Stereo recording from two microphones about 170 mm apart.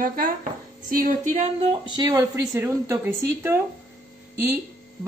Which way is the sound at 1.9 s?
25° right (ahead or behind).